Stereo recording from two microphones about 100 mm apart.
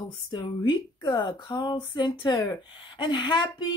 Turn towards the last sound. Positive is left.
turn(degrees=50)  # may be behind; listen again after turning